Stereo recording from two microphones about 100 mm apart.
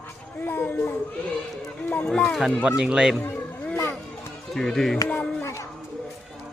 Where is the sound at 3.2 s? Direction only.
20° left (ahead or behind).